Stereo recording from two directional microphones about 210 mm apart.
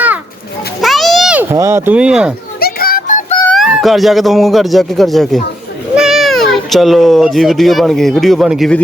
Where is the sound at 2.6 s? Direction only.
45° left (ahead or behind).